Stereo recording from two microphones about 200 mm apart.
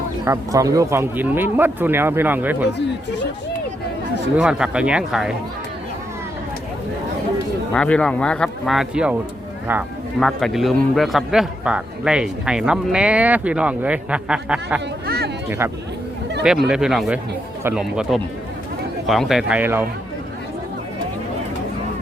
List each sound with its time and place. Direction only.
0.3 s speech: 15° right (ahead or behind)
4.4 s a man's voice: 5° right (ahead or behind)
7.7 s a man's voice: 5° left (ahead or behind)
10.2 s a man's voice: centre (ahead or behind)
15.0 s a sound: 55° right (ahead or behind)
15.4 s a man's voice: 10° right (ahead or behind)